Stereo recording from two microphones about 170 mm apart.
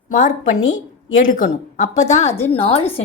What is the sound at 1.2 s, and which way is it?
Speech, 50° left (ahead or behind).